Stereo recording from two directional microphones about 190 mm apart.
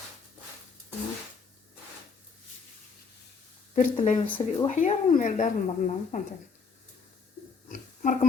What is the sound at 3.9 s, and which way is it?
Speech, 40° left (ahead or behind).